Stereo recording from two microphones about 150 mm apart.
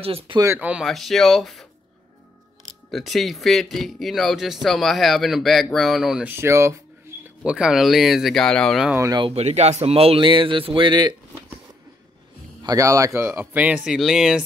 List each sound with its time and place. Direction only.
0.0 s speech: 40° right (ahead or behind)
0.4 s speech: 15° right (ahead or behind); by 1.7 s centre (ahead or behind)
2.9 s speech: centre (ahead or behind)
6.3 s speech: 15° right (ahead or behind)
7.4 s speech: 5° right (ahead or behind)
8.9 s speech: 20° right (ahead or behind)
9.2 s speech: 45° right (ahead or behind); by 11.1 s 30° right (ahead or behind)
12.6 s speech: 20° right (ahead or behind); by 14.4 s centre (ahead or behind)